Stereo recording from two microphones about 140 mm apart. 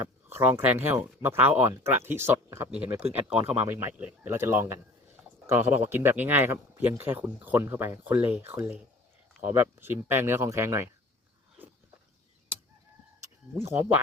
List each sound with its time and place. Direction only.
0.3 s speech: 15° right (ahead or behind)
13.6 s speech: 15° right (ahead or behind)